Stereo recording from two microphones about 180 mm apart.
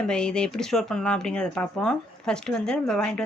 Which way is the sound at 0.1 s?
5° left (ahead or behind).